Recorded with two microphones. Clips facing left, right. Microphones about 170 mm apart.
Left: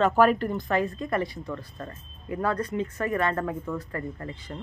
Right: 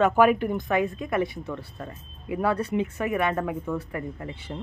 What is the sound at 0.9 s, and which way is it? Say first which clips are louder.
Speech: right 2 dB; 5° right (ahead or behind).